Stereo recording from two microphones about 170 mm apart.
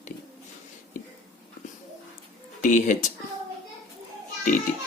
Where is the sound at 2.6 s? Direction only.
45° left (ahead or behind).